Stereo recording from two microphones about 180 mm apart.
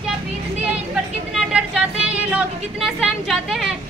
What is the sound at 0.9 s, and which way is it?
Speech, 5° right (ahead or behind).